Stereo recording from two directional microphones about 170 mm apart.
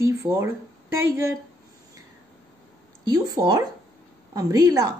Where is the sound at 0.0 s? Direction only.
15° right (ahead or behind).